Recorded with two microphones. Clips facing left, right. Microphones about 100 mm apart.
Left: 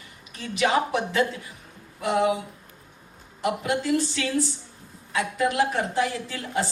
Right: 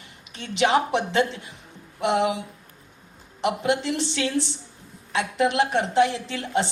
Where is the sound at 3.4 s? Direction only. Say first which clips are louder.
Right 2 dB; 20° right (ahead or behind).